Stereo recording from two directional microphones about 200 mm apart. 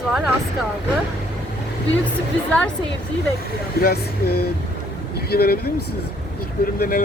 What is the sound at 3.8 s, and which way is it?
Speech, 50° left (ahead or behind).